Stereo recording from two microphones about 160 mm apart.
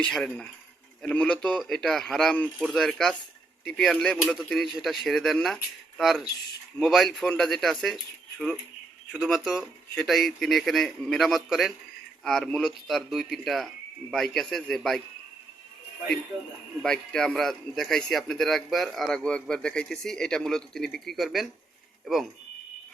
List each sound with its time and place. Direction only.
0.0 s a man's voice: 5° left (ahead or behind)
9.1 s a man's voice: centre (ahead or behind)
16.3 s speech: 20° right (ahead or behind)
16.8 s a man's voice: 5° left (ahead or behind)